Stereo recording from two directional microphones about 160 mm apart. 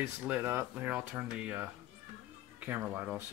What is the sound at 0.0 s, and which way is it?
Speech, 10° right (ahead or behind).